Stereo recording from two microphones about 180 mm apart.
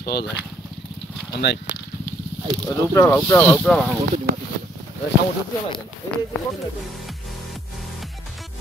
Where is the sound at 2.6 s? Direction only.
20° left (ahead or behind).